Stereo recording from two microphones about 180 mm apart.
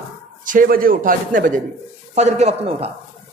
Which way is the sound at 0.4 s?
50° right (ahead or behind).